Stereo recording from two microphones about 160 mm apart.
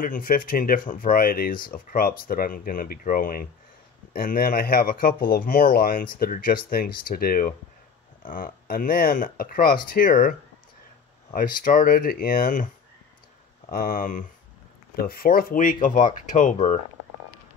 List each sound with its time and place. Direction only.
0.0 s speech: 60° left (ahead or behind)
11.3 s speech: 60° left (ahead or behind)
15.0 s speech: 70° left (ahead or behind); by 16.7 s 45° left (ahead or behind)